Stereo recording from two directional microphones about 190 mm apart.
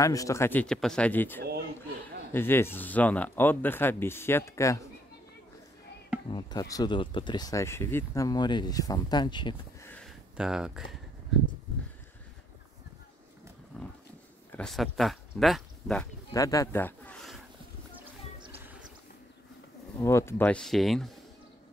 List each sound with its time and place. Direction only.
0.0 s speech: 15° left (ahead or behind)
6.3 s speech: 20° left (ahead or behind)
9.8 s a sound: 5° left (ahead or behind)
10.3 s speech: 5° right (ahead or behind)
14.5 s speech: centre (ahead or behind)
16.3 s speech: 15° left (ahead or behind)
20.0 s speech: 15° left (ahead or behind)